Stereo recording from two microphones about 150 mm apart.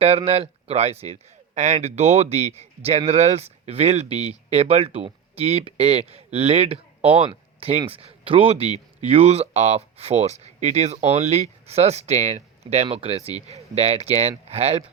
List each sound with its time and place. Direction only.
0.0 s speech: 40° right (ahead or behind)
7.3 s a sound: 40° right (ahead or behind)
7.9 s a man's voice: 40° right (ahead or behind)